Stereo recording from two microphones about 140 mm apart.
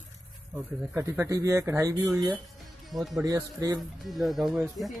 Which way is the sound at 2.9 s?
Centre (ahead or behind).